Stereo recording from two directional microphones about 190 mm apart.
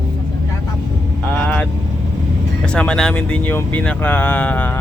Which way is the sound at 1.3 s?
5° left (ahead or behind).